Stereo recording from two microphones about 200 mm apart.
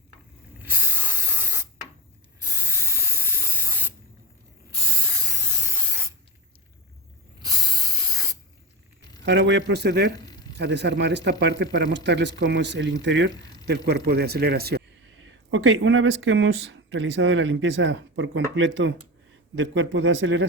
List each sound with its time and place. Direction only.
0.6 s spray: 10° right (ahead or behind)
2.7 s spray: 15° right (ahead or behind)
9.2 s speech: 65° right (ahead or behind)
13.3 s a sound: 20° left (ahead or behind)
13.7 s a man's voice: 55° right (ahead or behind)
15.4 s speech: 70° right (ahead or behind)